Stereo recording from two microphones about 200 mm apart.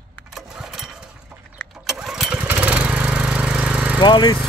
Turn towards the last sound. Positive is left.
turn(degrees=25)  # may be behind; listen again after turning